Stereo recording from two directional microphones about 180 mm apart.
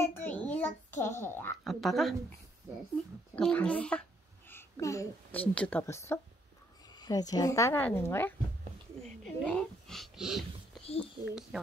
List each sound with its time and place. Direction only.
0.0 s a sound: 10° left (ahead or behind)
1.6 s speech: centre (ahead or behind)
3.3 s a woman's voice: 5° left (ahead or behind)